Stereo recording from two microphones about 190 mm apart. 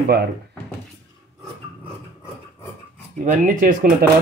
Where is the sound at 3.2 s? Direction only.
45° right (ahead or behind).